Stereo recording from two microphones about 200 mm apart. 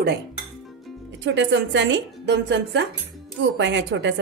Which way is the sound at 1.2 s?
65° right (ahead or behind).